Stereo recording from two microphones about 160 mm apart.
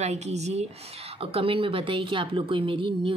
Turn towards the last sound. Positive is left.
turn(degrees=-30)  # may be behind; listen again after turning